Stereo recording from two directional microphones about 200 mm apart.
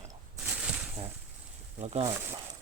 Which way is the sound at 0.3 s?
5° right (ahead or behind).